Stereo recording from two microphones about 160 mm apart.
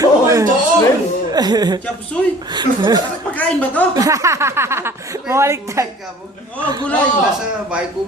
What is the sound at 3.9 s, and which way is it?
Speech, 20° right (ahead or behind).